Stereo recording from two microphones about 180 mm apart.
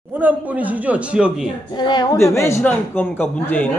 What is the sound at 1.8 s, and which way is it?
A man's voice, 25° left (ahead or behind).